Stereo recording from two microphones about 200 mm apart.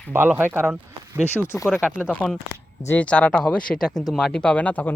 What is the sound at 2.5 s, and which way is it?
Speech, 10° left (ahead or behind).